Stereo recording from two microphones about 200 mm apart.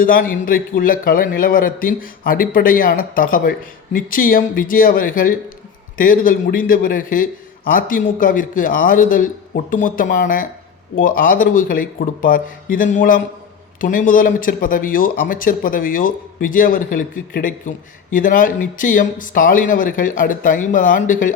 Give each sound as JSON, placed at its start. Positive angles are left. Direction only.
{"t": 0.0, "sound": "speech", "side_deg": 45}